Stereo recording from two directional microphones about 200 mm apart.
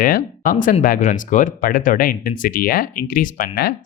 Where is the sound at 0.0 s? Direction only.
45° left (ahead or behind).